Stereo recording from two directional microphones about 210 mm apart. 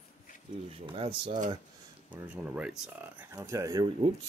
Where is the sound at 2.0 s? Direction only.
5° right (ahead or behind); by 4.1 s 20° right (ahead or behind).